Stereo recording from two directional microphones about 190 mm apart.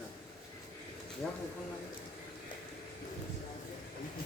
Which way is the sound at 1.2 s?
5° left (ahead or behind).